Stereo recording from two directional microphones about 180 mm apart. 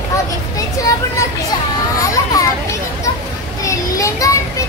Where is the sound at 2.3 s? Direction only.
20° left (ahead or behind).